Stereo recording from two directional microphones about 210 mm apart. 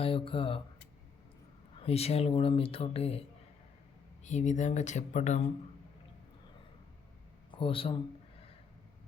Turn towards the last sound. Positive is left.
turn(degrees=25)  # may be behind; listen again after turning